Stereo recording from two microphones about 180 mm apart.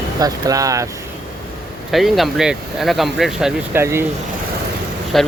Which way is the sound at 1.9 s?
Centre (ahead or behind).